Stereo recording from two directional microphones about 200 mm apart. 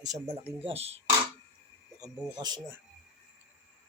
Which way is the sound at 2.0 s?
20° right (ahead or behind).